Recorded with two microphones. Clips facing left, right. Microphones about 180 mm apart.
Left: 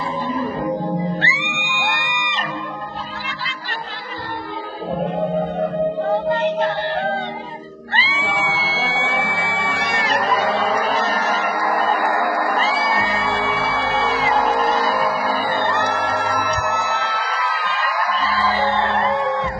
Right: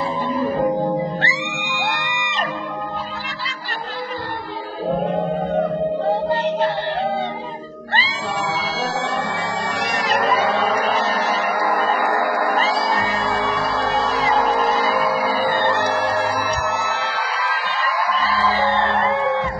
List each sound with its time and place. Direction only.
1.2 s music: 40° right (ahead or behind)
7.9 s music: 40° right (ahead or behind)
10.1 s a sound: centre (ahead or behind)
12.5 s music: 40° right (ahead or behind)
14.4 s music: centre (ahead or behind)
18.3 s music: centre (ahead or behind)